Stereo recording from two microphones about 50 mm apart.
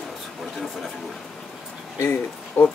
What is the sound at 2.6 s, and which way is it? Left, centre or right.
Speech, left.